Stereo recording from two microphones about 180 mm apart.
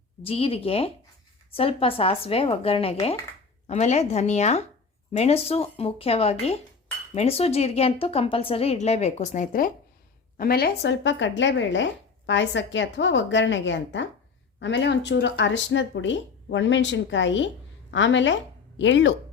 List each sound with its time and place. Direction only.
0.2 s a woman's voice: 30° left (ahead or behind); by 19.1 s 90° left